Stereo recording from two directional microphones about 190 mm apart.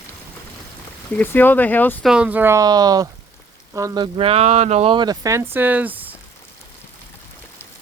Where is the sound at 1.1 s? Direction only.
10° left (ahead or behind).